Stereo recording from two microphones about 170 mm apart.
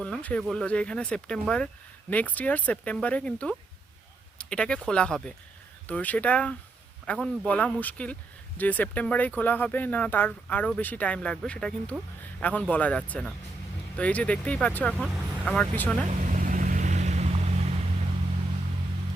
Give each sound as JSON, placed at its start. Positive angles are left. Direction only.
{"t": 0.0, "sound": "speech", "side_deg": 5}
{"t": 16.0, "sound": "vehicle", "side_deg": -45}